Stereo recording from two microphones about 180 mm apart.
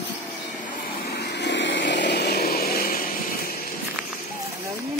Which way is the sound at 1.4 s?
80° left.